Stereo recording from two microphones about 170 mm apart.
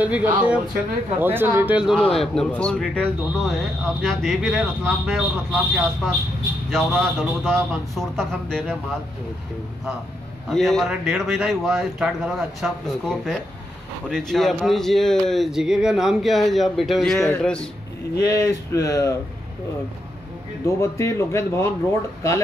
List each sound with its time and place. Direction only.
0.0 s speech: 10° right (ahead or behind)
2.0 s speech: 5° left (ahead or behind)
10.5 s speech: centre (ahead or behind)
18.2 s speech: 20° left (ahead or behind)
20.6 s speech: 15° left (ahead or behind)